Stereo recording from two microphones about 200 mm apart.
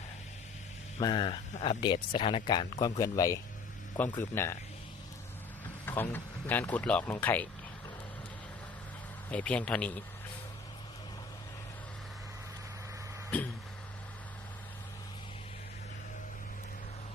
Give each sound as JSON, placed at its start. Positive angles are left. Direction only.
{"t": 1.0, "sound": "speech", "side_deg": 25}
{"t": 5.8, "sound": "speech", "side_deg": 10}
{"t": 9.3, "sound": "a man's voice", "side_deg": 5}
{"t": 13.3, "sound": "a sound", "side_deg": 10}